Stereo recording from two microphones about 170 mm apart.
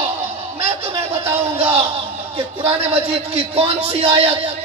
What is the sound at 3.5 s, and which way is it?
Music, 35° right (ahead or behind).